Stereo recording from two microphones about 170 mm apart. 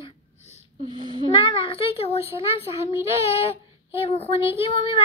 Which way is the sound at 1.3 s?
30° left (ahead or behind).